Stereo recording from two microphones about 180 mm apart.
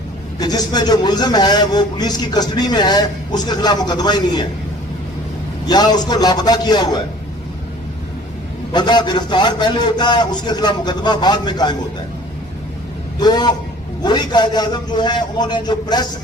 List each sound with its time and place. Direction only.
0.3 s a man's voice: 20° left (ahead or behind)
5.6 s a man's voice: 25° left (ahead or behind)
8.7 s a man's voice: 25° left (ahead or behind)
13.1 s a man's voice: 25° left (ahead or behind)